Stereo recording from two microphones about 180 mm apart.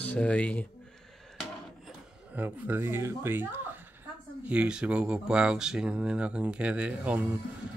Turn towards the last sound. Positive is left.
turn(degrees=-10)  # may be behind; listen again after turning